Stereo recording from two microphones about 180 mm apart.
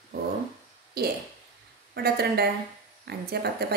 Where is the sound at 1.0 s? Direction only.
60° right (ahead or behind).